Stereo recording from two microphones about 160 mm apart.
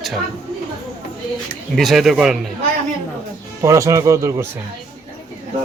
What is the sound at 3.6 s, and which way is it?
Speech, 20° right (ahead or behind).